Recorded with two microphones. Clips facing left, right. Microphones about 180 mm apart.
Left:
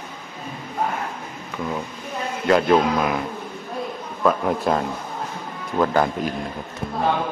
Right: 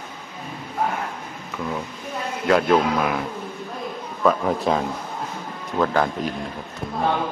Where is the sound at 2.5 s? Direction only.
Centre (ahead or behind).